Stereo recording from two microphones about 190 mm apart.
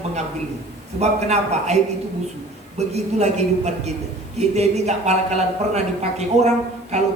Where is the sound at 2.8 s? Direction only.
35° right (ahead or behind).